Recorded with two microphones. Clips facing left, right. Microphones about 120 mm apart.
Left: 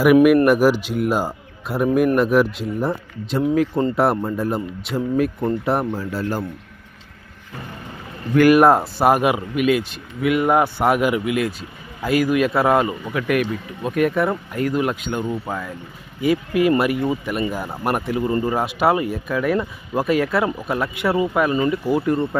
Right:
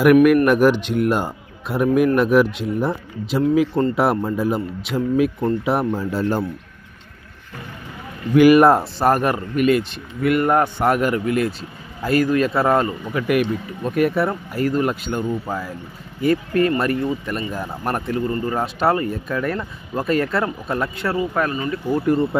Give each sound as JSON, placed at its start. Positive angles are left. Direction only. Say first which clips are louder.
{"t": 0.0, "sound": "speech", "louder": "even", "side_deg": 5}
{"t": 5.9, "sound": "a man's voice", "louder": "right 3 dB", "side_deg": -25}
{"t": 8.4, "sound": "speech", "louder": "right 1 dB", "side_deg": 0}